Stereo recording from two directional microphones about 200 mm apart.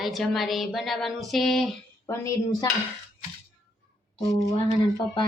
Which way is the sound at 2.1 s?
15° left (ahead or behind).